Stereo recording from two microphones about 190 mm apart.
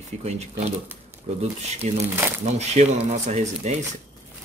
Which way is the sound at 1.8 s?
35° right (ahead or behind).